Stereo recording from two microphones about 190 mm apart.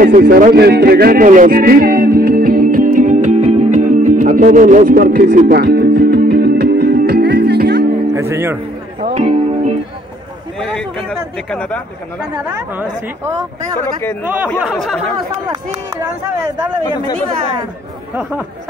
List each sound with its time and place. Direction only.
0.0 s a sound: 50° right (ahead or behind)
8.1 s speech: 15° right (ahead or behind)
9.0 s music: 35° right (ahead or behind)
10.6 s a sound: centre (ahead or behind)
12.4 s speech: 5° right (ahead or behind)
14.2 s speech: 10° right (ahead or behind)
14.8 s speech: centre (ahead or behind)
15.4 s speech: 20° right (ahead or behind)